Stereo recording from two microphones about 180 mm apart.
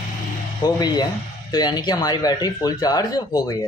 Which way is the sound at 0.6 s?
25° left (ahead or behind).